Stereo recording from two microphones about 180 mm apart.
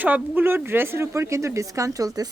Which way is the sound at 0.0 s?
10° right (ahead or behind).